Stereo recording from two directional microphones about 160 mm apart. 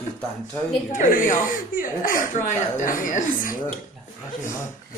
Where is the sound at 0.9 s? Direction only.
55° left (ahead or behind).